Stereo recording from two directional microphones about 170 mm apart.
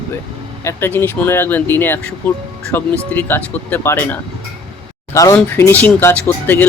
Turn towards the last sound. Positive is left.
turn(degrees=10)  # may be behind; listen again after turning